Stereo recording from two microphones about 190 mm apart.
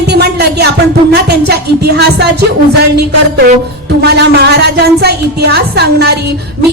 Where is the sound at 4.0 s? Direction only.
60° right (ahead or behind).